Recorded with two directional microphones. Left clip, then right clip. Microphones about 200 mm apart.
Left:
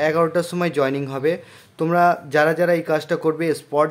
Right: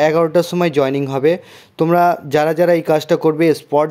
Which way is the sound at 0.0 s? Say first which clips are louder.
Right 5 dB; 25° right (ahead or behind).